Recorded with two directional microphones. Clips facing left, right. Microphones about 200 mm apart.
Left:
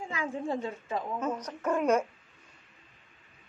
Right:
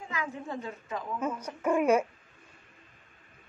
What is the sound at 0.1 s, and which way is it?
Speech, 30° left (ahead or behind).